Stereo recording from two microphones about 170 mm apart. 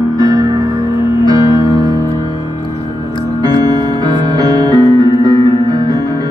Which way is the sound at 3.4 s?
25° right (ahead or behind).